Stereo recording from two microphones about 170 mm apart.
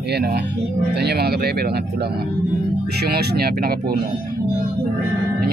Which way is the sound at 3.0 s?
70° right (ahead or behind).